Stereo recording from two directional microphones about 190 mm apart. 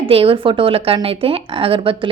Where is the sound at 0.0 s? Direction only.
30° right (ahead or behind).